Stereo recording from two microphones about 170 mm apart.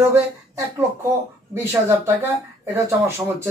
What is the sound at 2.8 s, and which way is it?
Speech, 15° right (ahead or behind).